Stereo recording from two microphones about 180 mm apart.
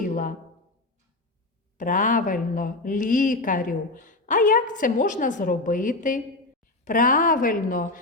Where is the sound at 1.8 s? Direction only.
45° left (ahead or behind).